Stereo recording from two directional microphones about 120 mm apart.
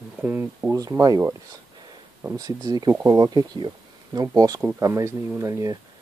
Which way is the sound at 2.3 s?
30° right (ahead or behind).